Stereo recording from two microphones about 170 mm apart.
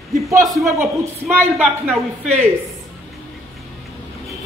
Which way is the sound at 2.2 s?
40° right (ahead or behind).